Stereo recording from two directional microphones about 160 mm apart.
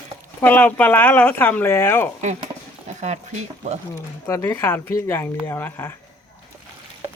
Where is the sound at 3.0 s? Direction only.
45° right (ahead or behind).